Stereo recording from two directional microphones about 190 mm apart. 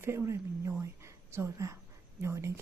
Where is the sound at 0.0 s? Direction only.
15° right (ahead or behind).